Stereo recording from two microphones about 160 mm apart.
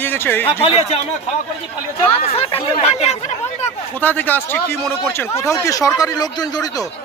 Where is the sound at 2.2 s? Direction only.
35° left (ahead or behind).